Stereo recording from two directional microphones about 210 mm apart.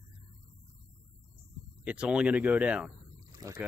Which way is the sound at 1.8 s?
5° right (ahead or behind).